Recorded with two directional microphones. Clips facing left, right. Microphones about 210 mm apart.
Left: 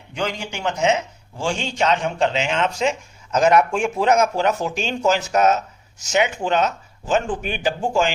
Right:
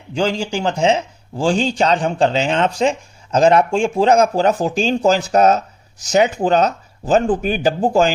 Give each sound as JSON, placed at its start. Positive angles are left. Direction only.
{"t": 0.1, "sound": "speech", "side_deg": -30}